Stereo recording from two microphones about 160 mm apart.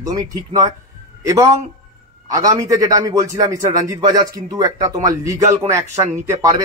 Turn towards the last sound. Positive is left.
turn(degrees=-20)  # may be behind; listen again after turning